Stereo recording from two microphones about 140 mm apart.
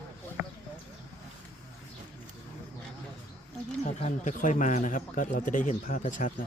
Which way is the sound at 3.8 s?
55° left (ahead or behind).